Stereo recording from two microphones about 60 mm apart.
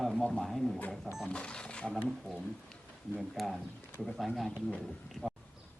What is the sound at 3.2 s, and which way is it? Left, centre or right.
Speech, centre.